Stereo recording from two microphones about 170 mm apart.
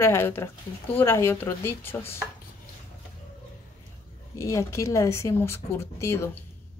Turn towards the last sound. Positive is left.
turn(degrees=15)  # may be behind; listen again after turning